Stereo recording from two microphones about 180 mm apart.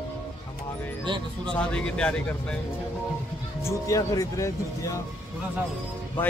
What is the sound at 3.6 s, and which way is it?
Speech, 15° left (ahead or behind).